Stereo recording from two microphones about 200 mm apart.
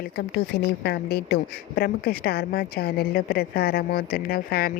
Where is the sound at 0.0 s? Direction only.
55° left (ahead or behind).